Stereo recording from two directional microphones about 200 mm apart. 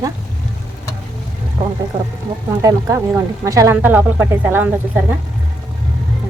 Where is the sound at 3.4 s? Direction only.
15° right (ahead or behind).